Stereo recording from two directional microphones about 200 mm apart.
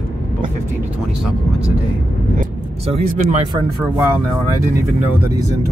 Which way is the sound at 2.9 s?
30° right (ahead or behind).